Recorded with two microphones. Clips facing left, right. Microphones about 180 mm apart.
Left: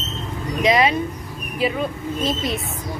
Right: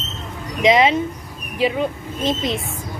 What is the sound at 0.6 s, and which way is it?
A woman's voice, 20° right (ahead or behind).